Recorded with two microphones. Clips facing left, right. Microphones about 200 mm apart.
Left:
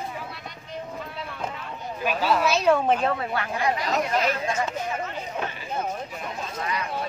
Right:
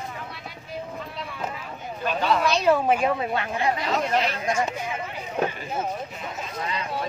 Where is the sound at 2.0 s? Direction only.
5° left (ahead or behind); by 3.9 s 25° right (ahead or behind).